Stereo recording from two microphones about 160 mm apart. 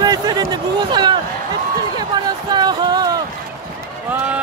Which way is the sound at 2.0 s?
25° right (ahead or behind).